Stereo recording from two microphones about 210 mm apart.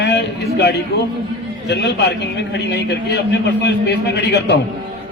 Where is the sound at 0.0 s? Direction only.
55° left (ahead or behind).